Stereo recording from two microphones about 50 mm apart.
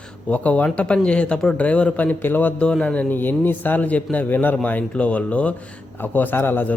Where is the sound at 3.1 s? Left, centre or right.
Left.